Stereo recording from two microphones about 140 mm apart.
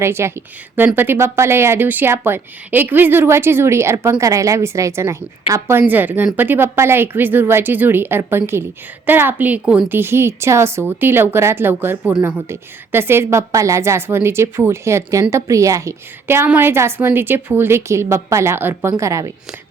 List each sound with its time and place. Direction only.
0.0 s a woman's voice: 20° right (ahead or behind)